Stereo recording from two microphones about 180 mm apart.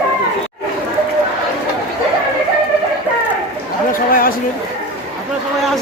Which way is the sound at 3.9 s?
50° left (ahead or behind).